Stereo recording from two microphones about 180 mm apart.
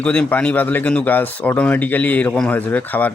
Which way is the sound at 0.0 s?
5° left (ahead or behind).